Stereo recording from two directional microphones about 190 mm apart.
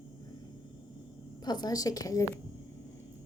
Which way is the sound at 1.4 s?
20° left (ahead or behind).